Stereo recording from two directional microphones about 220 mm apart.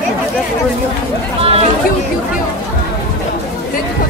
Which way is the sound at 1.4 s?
25° right (ahead or behind).